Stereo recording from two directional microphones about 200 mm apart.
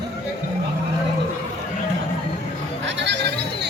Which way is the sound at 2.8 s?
60° right (ahead or behind).